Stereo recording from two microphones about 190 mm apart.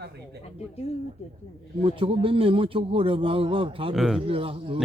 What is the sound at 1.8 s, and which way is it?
A man's voice, 30° right (ahead or behind).